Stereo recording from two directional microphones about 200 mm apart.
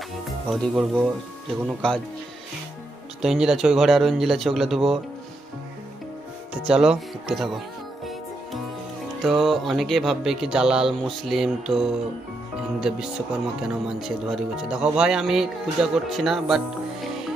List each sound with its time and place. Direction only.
0.5 s speech: centre (ahead or behind)
3.2 s speech: 5° right (ahead or behind)
6.7 s speech: 5° right (ahead or behind)
9.2 s speech: centre (ahead or behind)
13.6 s speech: centre (ahead or behind)